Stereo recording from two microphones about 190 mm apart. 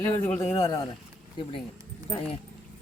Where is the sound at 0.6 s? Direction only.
15° left (ahead or behind).